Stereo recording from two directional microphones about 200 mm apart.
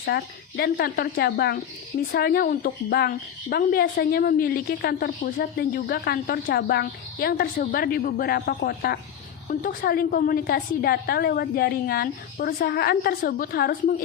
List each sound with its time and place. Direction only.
0.0 s a woman's voice: 50° left (ahead or behind)